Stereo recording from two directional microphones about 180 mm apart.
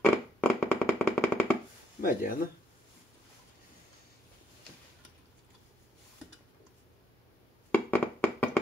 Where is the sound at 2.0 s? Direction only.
50° left (ahead or behind).